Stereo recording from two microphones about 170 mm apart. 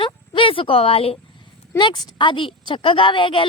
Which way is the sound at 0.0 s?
30° left (ahead or behind).